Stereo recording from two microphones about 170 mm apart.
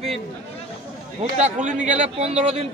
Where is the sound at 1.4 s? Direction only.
45° right (ahead or behind).